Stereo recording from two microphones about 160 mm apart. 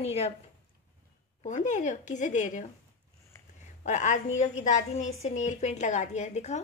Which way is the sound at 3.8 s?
50° left (ahead or behind).